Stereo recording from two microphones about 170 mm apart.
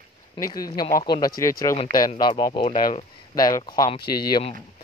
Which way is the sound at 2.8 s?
45° left (ahead or behind).